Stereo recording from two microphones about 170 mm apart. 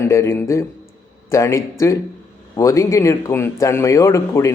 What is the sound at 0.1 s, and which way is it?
A man's voice, 15° left (ahead or behind).